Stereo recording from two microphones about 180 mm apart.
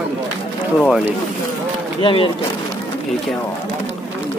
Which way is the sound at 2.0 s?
30° left (ahead or behind).